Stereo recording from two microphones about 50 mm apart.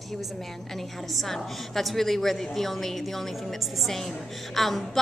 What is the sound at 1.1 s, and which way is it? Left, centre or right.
A woman's voice, centre.